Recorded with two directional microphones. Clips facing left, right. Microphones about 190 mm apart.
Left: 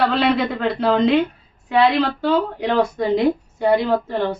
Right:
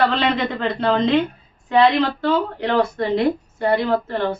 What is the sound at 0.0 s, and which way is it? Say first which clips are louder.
Speech: left 1 dB; 5° left (ahead or behind).